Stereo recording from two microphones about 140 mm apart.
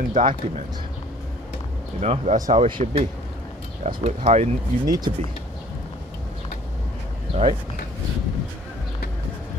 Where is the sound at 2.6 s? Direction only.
45° right (ahead or behind).